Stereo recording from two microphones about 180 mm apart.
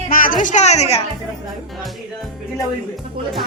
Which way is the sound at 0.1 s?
50° left (ahead or behind).